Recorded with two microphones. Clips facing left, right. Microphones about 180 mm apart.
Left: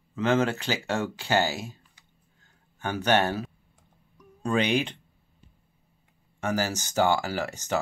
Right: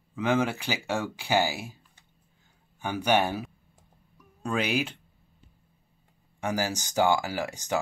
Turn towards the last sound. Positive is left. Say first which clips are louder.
# left 1 dB
turn(degrees=-15)  # may be behind; listen again after turning